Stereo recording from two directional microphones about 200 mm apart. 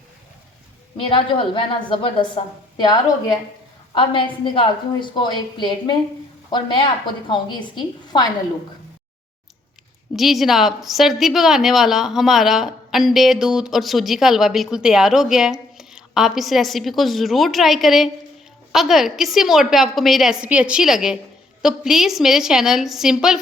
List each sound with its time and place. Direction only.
0.9 s a woman's voice: 25° left (ahead or behind)
10.2 s a woman's voice: centre (ahead or behind)